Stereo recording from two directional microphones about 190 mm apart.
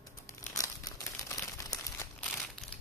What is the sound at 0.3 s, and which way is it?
Crumpling, 20° left (ahead or behind).